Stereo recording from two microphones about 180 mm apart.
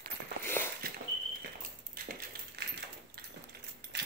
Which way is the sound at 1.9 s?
55° right (ahead or behind).